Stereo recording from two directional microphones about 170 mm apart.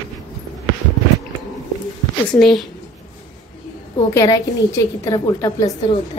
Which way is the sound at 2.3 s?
Centre (ahead or behind).